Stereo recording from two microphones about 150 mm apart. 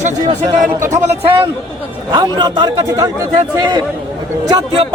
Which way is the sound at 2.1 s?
30° right (ahead or behind).